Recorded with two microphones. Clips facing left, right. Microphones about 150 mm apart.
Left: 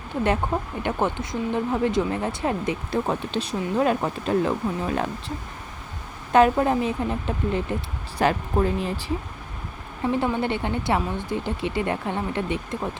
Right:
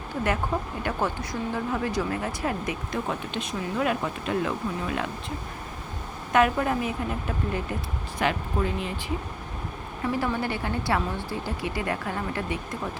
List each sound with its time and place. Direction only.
0.8 s speech: 20° left (ahead or behind)
6.3 s speech: 30° left (ahead or behind)
8.2 s speech: 40° left (ahead or behind)
10.1 s speech: 20° left (ahead or behind)